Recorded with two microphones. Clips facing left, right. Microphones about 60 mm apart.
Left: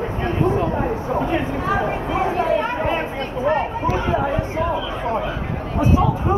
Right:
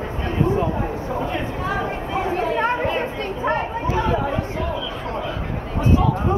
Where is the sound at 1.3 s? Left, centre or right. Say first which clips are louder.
Left 4 dB; centre.